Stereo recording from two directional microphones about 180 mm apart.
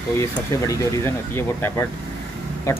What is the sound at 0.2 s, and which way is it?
Speech, 15° left (ahead or behind).